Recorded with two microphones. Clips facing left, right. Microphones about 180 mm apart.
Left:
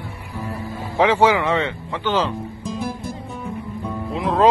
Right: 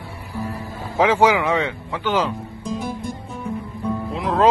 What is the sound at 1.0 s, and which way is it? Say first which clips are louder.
Speech: even; 10° right (ahead or behind).